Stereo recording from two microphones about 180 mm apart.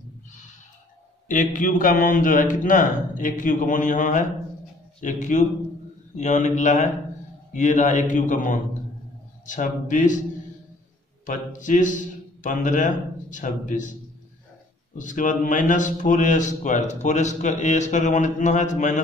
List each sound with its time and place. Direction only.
1.3 s a man's voice: 45° left (ahead or behind)
11.2 s a man's voice: 45° left (ahead or behind)
15.0 s a man's voice: 45° left (ahead or behind)